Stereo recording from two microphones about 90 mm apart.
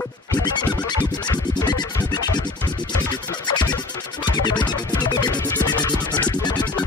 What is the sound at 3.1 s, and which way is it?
Music, 50° left (ahead or behind).